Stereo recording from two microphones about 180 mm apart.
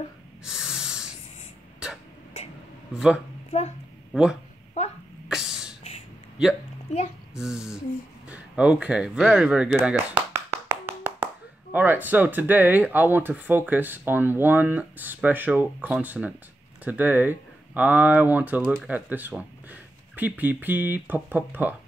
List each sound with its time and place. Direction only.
0.5 s snort: 5° right (ahead or behind)
4.1 s speech: 5° right (ahead or behind)
4.8 s speech: 40° left (ahead or behind)
5.3 s a sound: 5° right (ahead or behind)
7.3 s a sound: 5° right (ahead or behind)
11.7 s speech: 10° right (ahead or behind)